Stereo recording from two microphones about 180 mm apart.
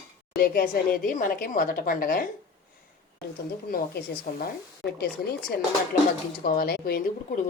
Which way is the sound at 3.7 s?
55° left (ahead or behind).